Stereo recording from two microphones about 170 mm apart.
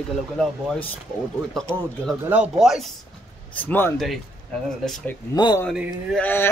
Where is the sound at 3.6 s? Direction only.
10° left (ahead or behind).